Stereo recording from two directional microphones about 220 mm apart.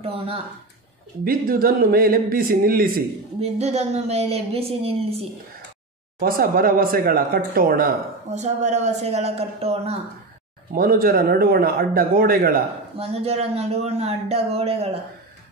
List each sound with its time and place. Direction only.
0.0 s speech: 25° right (ahead or behind)
1.2 s a man's voice: 40° right (ahead or behind)
3.3 s speech: 30° right (ahead or behind)
6.1 s a man's voice: 40° right (ahead or behind)
10.7 s a man's voice: 40° right (ahead or behind)
12.9 s speech: 25° right (ahead or behind)